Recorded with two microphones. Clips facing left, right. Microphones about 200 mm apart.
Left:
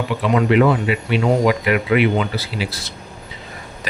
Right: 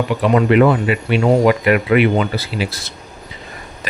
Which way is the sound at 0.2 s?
50° right (ahead or behind).